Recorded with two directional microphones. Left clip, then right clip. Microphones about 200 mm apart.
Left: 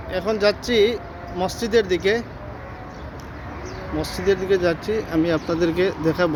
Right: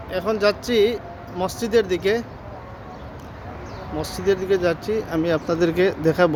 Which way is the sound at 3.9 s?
5° right (ahead or behind).